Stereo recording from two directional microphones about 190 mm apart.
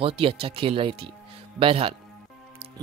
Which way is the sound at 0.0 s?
30° right (ahead or behind).